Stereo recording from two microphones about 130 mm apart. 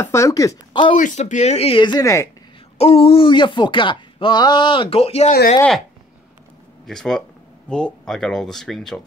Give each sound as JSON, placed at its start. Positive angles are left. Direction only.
{"t": 0.0, "sound": "speech", "side_deg": 25}
{"t": 0.9, "sound": "speech", "side_deg": 70}
{"t": 2.8, "sound": "speech", "side_deg": 50}
{"t": 6.9, "sound": "speech", "side_deg": 5}